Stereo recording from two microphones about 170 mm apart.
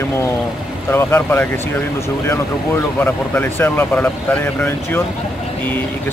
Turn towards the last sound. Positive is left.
turn(degrees=10)  # may be behind; listen again after turning